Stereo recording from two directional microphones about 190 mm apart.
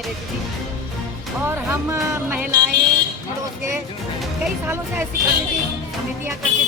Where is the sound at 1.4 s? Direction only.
15° right (ahead or behind).